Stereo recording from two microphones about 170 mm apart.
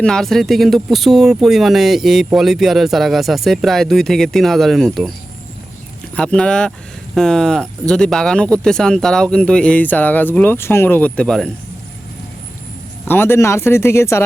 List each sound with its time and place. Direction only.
0.0 s speech: centre (ahead or behind)
6.1 s speech: 5° left (ahead or behind)
13.1 s speech: 15° left (ahead or behind)